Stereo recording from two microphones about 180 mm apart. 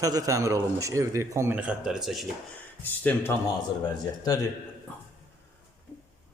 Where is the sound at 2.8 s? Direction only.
10° left (ahead or behind).